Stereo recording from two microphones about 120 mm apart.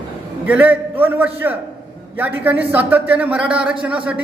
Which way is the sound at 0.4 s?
15° right (ahead or behind).